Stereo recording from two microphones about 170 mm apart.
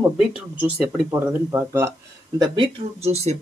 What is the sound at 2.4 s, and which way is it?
Speech, 35° right (ahead or behind).